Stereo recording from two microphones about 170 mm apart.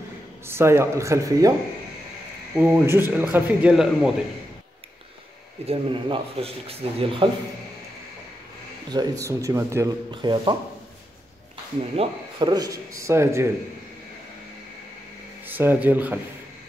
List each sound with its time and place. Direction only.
0.5 s speech: 15° right (ahead or behind)
2.5 s speech: 15° right (ahead or behind)
5.7 s speech: 30° right (ahead or behind)
8.9 s speech: 20° right (ahead or behind)
10.1 s speech: 25° right (ahead or behind)
12.0 s speech: 25° right (ahead or behind)
15.4 s speech: 10° right (ahead or behind)